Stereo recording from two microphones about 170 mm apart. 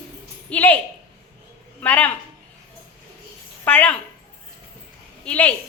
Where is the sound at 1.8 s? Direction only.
10° left (ahead or behind).